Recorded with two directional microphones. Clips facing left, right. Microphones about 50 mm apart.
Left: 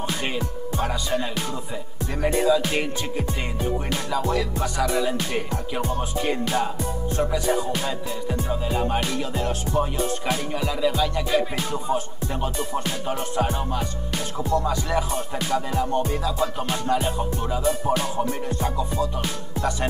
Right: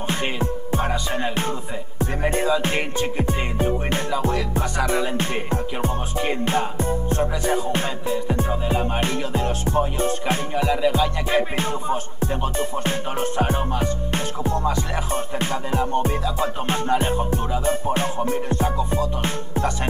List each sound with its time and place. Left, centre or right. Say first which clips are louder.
0.1 s music: right 3 dB; right